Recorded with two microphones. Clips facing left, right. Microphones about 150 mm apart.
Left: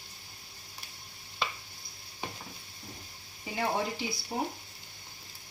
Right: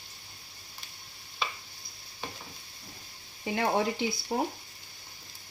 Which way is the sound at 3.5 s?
65° right (ahead or behind).